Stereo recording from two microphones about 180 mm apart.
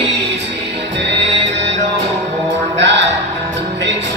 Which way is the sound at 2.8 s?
75° right (ahead or behind).